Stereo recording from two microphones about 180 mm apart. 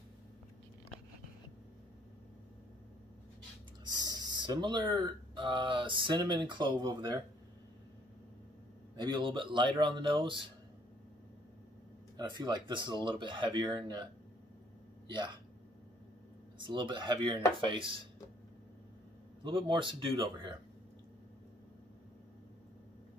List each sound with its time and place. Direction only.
3.9 s speech: 20° right (ahead or behind)
8.9 s speech: 25° right (ahead or behind)
12.2 s speech: 25° right (ahead or behind)
15.0 s speech: 25° right (ahead or behind)
16.5 s speech: 25° right (ahead or behind)
19.4 s speech: 25° right (ahead or behind)